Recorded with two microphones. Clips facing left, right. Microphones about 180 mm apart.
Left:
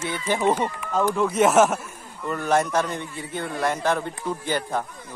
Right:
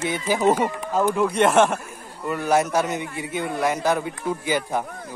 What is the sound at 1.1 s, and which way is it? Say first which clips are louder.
Speech: left 1 dB; centre (ahead or behind).